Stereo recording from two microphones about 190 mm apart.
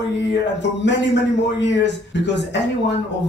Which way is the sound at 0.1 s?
65° left (ahead or behind).